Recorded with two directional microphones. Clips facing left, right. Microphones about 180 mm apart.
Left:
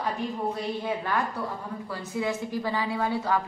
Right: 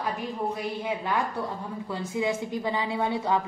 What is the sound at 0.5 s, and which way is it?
Speech, 15° right (ahead or behind).